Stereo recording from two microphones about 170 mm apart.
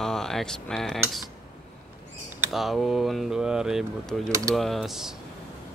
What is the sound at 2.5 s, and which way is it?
Speech, centre (ahead or behind).